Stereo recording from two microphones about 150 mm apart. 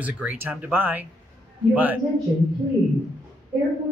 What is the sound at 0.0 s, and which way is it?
Speech, 10° right (ahead or behind).